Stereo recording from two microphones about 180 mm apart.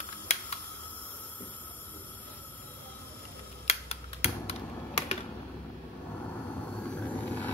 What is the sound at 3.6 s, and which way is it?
Computer keyboard, 35° left (ahead or behind).